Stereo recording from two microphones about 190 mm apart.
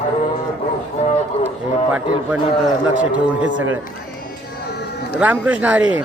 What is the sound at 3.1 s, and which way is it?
Speech, 85° right.